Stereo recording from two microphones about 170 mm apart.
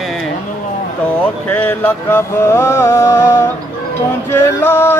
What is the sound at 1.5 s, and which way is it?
Music, 10° left (ahead or behind).